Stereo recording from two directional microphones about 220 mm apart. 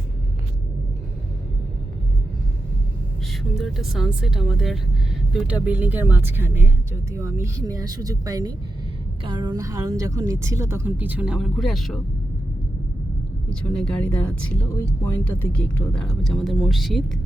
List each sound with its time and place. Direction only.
3.6 s speech: centre (ahead or behind)
13.5 s speech: 5° left (ahead or behind)